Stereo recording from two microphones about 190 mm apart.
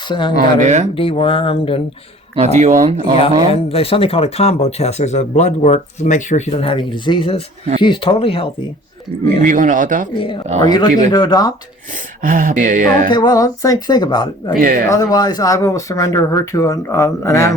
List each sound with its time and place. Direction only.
0.1 s speech: 25° left (ahead or behind)
0.3 s speech: 40° right (ahead or behind)
0.9 s speech: 30° left (ahead or behind)
2.3 s speech: 35° right (ahead or behind)
3.5 s speech: 30° left (ahead or behind)
9.4 s speech: 40° right (ahead or behind)
10.2 s speech: 25° left (ahead or behind)
12.2 s speech: 45° right (ahead or behind)
13.1 s speech: 20° left (ahead or behind)
14.6 s speech: 45° right (ahead or behind)
14.8 s speech: 20° left (ahead or behind)